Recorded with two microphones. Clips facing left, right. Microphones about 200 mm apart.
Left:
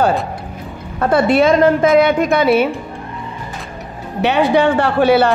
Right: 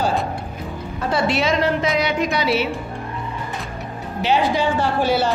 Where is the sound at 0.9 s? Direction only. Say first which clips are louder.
Left 8 dB; 55° left (ahead or behind).